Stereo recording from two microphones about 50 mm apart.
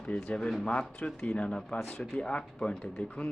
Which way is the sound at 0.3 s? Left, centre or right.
Centre.